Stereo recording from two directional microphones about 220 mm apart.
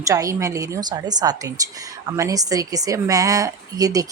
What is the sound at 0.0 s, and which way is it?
Speech, 15° right (ahead or behind).